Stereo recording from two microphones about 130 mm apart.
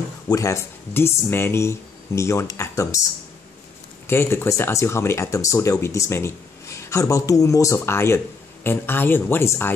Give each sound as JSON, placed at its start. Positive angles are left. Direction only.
{"t": 0.3, "sound": "speech", "side_deg": 25}
{"t": 4.1, "sound": "speech", "side_deg": 20}